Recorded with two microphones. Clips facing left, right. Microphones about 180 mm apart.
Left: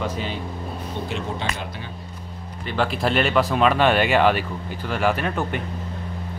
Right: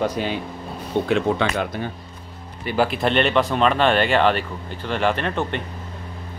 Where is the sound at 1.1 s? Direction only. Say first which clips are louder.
Right 10 dB; 75° right (ahead or behind).